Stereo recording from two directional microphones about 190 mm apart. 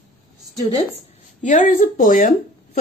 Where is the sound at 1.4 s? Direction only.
45° left (ahead or behind).